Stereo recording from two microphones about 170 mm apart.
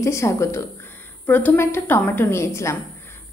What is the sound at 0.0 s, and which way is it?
A woman's voice, 15° left (ahead or behind).